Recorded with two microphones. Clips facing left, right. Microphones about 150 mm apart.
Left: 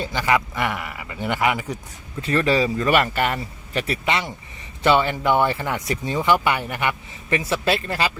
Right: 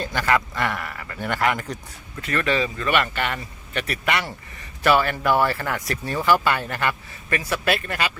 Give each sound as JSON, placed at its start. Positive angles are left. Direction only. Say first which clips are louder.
{"t": 0.0, "sound": "speech", "louder": "left 1 dB", "side_deg": 15}
{"t": 2.2, "sound": "a man's voice", "louder": "left 4 dB", "side_deg": 30}